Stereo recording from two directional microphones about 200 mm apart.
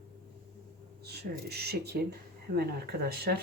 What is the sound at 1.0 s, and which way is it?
Speech, 55° right (ahead or behind).